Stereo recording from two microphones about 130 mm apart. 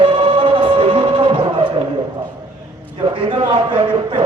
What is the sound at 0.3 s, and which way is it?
Music, 40° right (ahead or behind).